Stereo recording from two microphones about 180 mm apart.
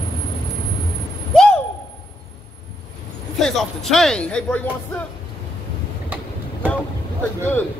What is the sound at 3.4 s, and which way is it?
A man's voice, centre (ahead or behind).